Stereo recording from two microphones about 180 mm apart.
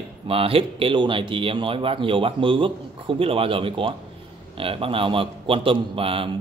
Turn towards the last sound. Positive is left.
turn(degrees=-30)  # may be behind; listen again after turning